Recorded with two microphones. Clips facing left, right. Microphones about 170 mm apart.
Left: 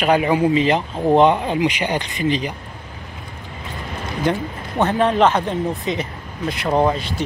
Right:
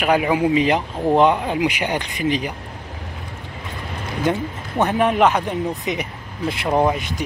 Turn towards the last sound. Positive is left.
turn(degrees=-15)  # may be behind; listen again after turning